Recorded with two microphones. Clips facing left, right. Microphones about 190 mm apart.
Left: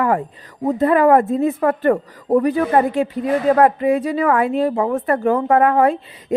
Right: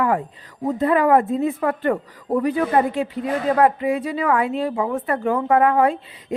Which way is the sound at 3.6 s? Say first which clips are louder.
Left 3 dB; 45° left (ahead or behind).